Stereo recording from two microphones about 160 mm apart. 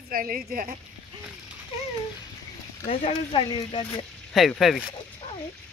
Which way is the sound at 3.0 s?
30° left (ahead or behind).